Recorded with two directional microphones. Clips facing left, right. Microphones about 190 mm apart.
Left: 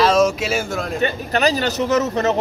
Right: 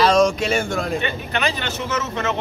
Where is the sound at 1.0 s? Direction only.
40° left (ahead or behind).